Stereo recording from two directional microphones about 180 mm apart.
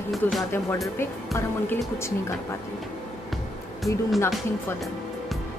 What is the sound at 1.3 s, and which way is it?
Speech, 15° left (ahead or behind).